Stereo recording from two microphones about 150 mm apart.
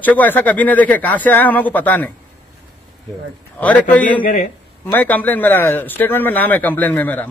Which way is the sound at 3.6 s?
10° left (ahead or behind).